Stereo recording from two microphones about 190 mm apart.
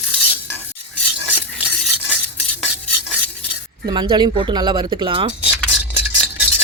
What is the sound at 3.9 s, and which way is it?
Speech, 25° right (ahead or behind).